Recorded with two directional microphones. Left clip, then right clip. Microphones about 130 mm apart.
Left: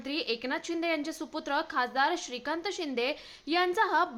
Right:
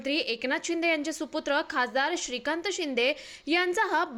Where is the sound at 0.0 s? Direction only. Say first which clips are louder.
Right 4 dB; 20° right (ahead or behind).